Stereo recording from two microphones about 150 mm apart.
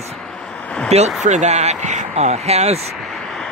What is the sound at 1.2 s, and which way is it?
Speech, 50° right (ahead or behind).